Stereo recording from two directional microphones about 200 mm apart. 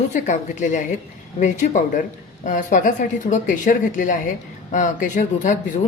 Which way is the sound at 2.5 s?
40° left (ahead or behind).